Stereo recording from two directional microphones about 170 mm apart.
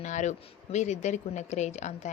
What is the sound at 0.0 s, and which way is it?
Speech, 45° left (ahead or behind).